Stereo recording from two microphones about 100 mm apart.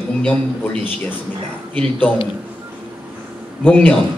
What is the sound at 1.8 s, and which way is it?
Speech, 15° left (ahead or behind).